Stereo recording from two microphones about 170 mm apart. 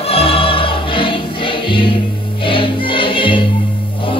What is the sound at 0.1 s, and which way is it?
Music, 35° left (ahead or behind).